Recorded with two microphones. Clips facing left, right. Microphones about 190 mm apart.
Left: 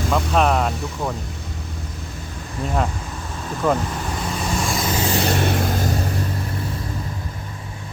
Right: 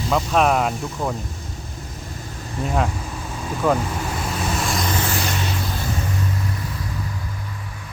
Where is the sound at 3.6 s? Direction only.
5° right (ahead or behind).